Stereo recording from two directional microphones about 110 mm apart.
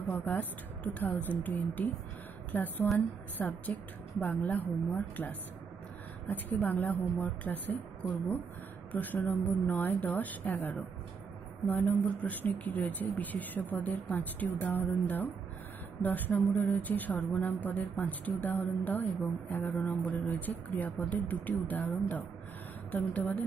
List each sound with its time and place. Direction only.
0.1 s speech: 15° left (ahead or behind)